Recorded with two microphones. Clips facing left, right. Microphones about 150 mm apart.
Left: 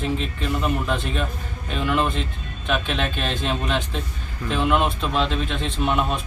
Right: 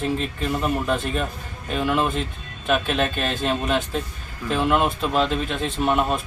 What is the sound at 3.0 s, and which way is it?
Speech, 40° right (ahead or behind).